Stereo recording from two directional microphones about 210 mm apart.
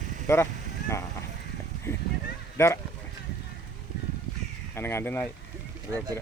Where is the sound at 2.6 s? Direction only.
10° left (ahead or behind).